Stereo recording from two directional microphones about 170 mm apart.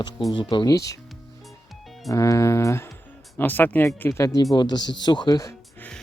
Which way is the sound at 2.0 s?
20° left (ahead or behind).